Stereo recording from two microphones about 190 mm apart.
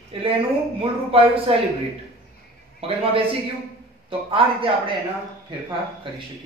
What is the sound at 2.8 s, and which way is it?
A man's voice, 30° right (ahead or behind).